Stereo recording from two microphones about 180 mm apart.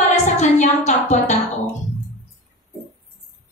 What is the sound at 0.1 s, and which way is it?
A woman's voice, 40° left (ahead or behind).